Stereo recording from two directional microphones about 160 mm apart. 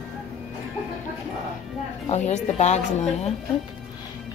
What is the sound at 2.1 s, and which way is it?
A woman's voice, 45° left (ahead or behind).